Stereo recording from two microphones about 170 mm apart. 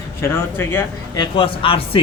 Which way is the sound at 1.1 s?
30° left (ahead or behind).